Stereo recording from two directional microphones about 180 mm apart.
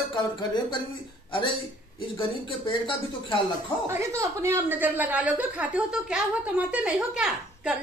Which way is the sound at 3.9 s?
15° right (ahead or behind).